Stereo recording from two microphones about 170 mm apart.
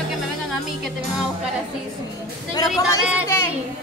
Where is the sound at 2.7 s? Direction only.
5° right (ahead or behind).